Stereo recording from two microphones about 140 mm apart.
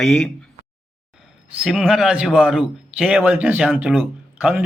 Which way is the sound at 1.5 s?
5° right (ahead or behind).